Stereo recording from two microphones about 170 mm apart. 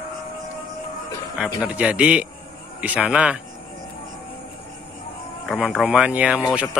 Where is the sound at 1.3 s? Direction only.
5° right (ahead or behind).